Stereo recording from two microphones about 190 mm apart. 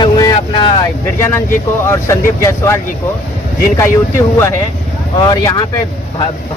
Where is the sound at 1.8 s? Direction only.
15° left (ahead or behind).